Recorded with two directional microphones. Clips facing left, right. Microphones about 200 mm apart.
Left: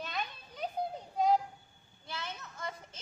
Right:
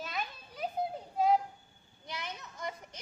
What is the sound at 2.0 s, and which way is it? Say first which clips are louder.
Children playing: even; 15° right (ahead or behind).